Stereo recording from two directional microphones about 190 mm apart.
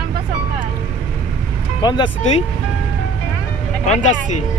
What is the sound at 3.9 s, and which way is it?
Speech, 40° left (ahead or behind).